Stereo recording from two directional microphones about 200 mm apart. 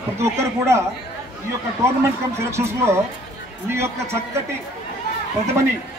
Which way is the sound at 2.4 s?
15° right (ahead or behind).